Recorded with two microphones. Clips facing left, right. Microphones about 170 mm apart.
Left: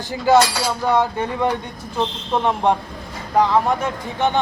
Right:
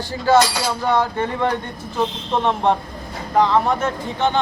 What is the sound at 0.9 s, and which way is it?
Speech, 10° left (ahead or behind).